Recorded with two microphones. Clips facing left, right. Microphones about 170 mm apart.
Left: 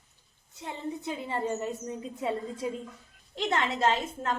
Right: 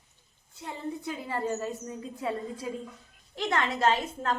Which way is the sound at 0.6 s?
25° left (ahead or behind).